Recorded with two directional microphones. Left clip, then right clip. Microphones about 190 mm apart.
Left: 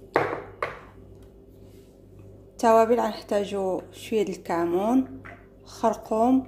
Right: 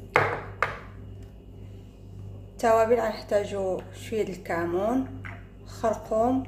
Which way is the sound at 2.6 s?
35° left (ahead or behind).